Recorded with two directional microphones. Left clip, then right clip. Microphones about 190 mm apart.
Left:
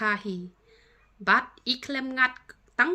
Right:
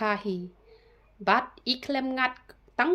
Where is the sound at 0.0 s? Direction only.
20° left (ahead or behind).